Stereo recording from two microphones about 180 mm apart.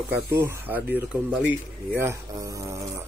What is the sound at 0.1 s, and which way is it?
Speech, 10° right (ahead or behind).